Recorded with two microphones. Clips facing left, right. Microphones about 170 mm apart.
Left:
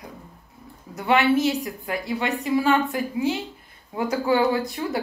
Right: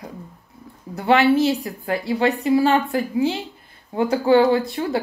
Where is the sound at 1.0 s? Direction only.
30° right (ahead or behind).